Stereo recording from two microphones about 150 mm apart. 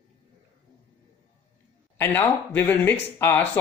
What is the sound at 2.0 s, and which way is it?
Speech, 15° left (ahead or behind).